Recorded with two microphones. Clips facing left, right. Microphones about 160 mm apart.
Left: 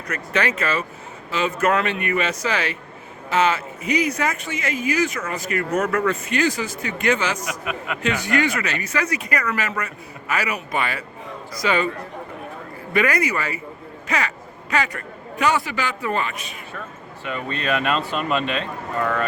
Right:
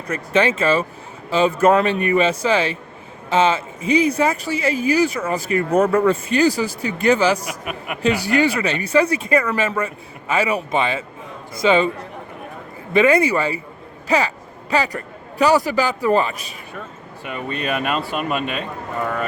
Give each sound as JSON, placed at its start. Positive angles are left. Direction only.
{"t": 0.1, "sound": "speech", "side_deg": -25}
{"t": 12.9, "sound": "speech", "side_deg": -25}
{"t": 14.1, "sound": "a sound", "side_deg": -30}
{"t": 15.4, "sound": "speech", "side_deg": -35}
{"t": 17.2, "sound": "speech", "side_deg": -10}